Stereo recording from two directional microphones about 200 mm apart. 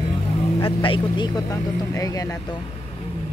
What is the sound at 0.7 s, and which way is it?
Speech, 25° left (ahead or behind).